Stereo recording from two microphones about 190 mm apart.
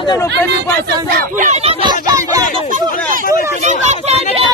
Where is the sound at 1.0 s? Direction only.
45° right (ahead or behind); by 2.0 s 30° right (ahead or behind).